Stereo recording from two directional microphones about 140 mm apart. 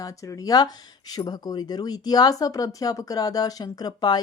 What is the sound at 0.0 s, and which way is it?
Speech, 25° left (ahead or behind).